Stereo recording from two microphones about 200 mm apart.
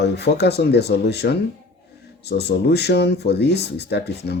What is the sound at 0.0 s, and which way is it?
Speech, 55° left (ahead or behind).